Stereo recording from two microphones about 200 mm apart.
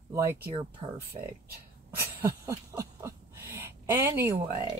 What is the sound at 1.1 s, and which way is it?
Speech, 25° right (ahead or behind).